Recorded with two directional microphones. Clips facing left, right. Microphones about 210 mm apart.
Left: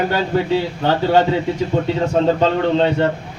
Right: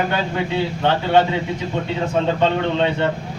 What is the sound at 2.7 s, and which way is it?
Speech, 40° left (ahead or behind).